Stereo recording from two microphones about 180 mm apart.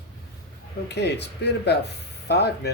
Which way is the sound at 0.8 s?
70° left (ahead or behind).